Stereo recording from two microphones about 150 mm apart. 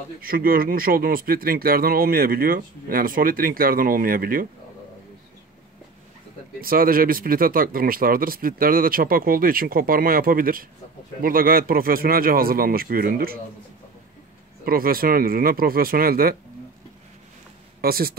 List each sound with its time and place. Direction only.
0.2 s speech: 75° right (ahead or behind)
6.6 s speech: 75° right (ahead or behind)
14.6 s speech: 80° right
17.8 s speech: 90° right